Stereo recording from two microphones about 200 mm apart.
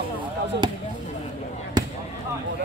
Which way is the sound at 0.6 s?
20° right (ahead or behind).